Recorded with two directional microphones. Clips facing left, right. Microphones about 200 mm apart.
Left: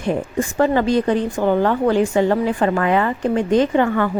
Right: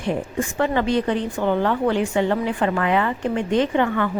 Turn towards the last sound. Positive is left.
turn(degrees=40)  # may be behind; listen again after turning